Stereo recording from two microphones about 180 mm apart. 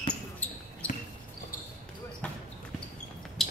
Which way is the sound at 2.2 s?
5° left (ahead or behind).